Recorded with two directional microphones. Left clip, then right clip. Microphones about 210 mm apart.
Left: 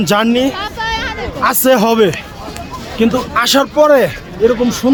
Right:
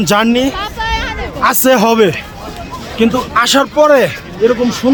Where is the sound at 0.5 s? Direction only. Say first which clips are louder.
Right 1 dB; 10° left (ahead or behind).